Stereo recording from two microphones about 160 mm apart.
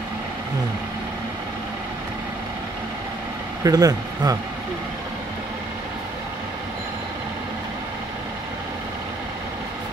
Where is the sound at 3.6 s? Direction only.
25° right (ahead or behind).